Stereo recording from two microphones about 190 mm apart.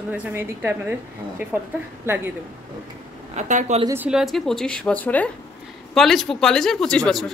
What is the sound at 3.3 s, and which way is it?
Speech, 40° right (ahead or behind).